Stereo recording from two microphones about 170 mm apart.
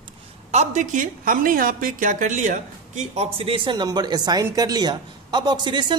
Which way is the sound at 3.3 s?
30° right (ahead or behind).